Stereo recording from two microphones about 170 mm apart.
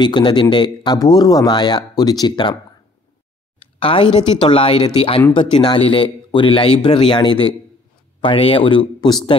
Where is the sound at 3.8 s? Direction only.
30° left (ahead or behind).